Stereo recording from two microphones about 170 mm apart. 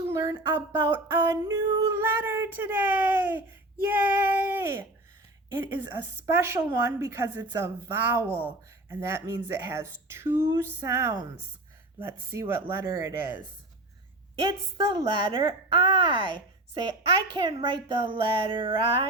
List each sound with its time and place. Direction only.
0.0 s a sound: 15° right (ahead or behind)
3.8 s female singing: 10° right (ahead or behind)
5.5 s speech: 15° right (ahead or behind)
14.4 s speech: 30° right (ahead or behind)